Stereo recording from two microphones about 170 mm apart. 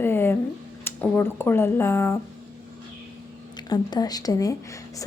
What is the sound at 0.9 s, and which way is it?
Speech, 10° left (ahead or behind).